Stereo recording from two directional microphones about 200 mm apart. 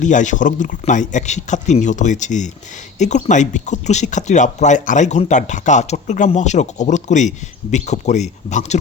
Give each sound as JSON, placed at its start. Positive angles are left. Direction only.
{"t": 0.0, "sound": "speech", "side_deg": 40}